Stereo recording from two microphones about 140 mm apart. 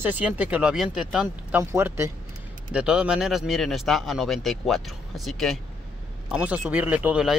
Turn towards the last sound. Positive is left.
turn(degrees=-10)  # may be behind; listen again after turning